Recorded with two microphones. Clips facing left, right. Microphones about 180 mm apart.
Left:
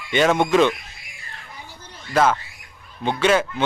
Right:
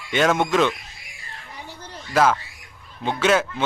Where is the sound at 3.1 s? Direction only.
5° right (ahead or behind).